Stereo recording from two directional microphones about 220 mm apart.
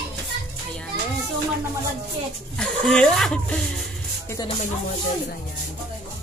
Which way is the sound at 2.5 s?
5° left (ahead or behind).